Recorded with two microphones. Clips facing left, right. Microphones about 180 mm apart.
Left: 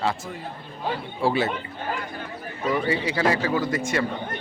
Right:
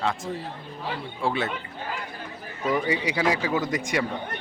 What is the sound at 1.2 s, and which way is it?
Speech, 5° left (ahead or behind).